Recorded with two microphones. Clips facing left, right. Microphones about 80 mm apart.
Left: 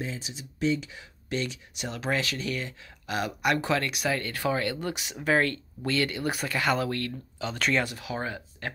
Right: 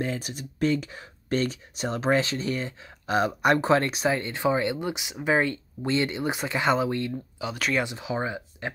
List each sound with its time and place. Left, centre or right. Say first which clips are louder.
0.0 s speech: right 6 dB; right; by 8.7 s centre